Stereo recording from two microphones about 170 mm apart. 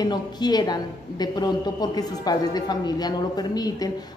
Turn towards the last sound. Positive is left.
turn(degrees=25)  # may be behind; listen again after turning